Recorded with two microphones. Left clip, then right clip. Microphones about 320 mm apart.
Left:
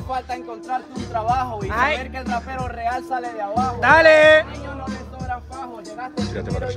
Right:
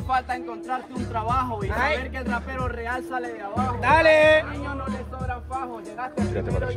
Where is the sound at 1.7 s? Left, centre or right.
Left.